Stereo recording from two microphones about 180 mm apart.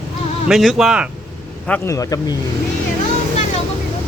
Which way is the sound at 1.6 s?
10° left (ahead or behind).